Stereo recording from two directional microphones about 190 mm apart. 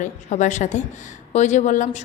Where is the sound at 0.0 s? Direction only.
40° left (ahead or behind).